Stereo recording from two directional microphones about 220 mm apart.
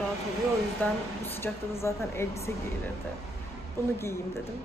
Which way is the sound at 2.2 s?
10° left (ahead or behind).